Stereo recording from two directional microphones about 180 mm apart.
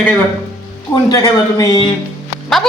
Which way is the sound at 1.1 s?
20° left (ahead or behind).